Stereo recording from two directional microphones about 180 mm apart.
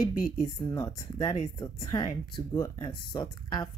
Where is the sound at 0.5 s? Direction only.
15° left (ahead or behind).